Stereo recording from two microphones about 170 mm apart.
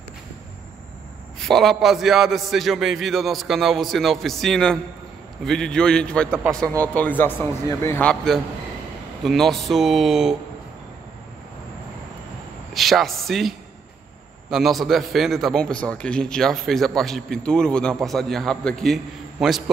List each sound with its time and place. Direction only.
1.4 s a man's voice: centre (ahead or behind)
6.6 s speech: 20° right (ahead or behind)
6.9 s a man's voice: 10° left (ahead or behind)
12.7 s a man's voice: centre (ahead or behind)